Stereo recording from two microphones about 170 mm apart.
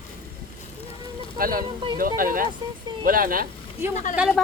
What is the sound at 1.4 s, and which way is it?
Speech, 55° right (ahead or behind).